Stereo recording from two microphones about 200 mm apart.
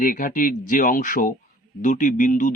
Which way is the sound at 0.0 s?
40° left (ahead or behind).